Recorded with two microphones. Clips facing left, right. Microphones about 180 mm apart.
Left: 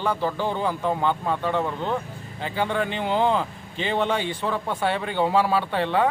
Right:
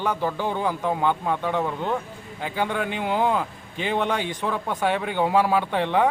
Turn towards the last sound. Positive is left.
turn(degrees=-15)  # may be behind; listen again after turning